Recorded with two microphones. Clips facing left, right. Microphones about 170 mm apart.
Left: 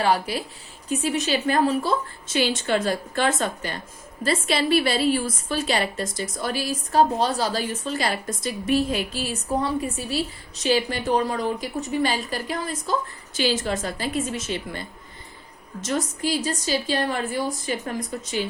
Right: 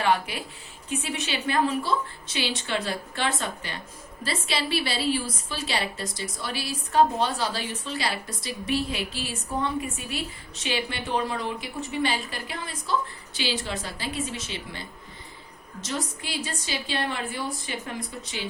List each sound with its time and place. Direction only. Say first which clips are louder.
0.0 s a woman's voice: left 3 dB; 35° left (ahead or behind)